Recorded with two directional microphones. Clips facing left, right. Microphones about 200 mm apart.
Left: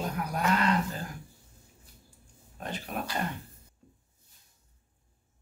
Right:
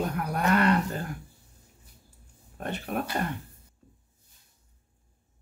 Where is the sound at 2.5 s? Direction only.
55° right (ahead or behind).